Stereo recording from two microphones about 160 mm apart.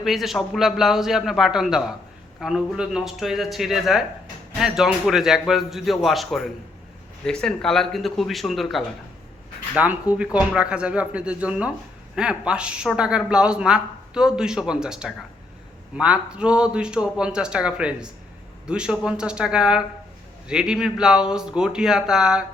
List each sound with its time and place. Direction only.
0.0 s a man's voice: centre (ahead or behind)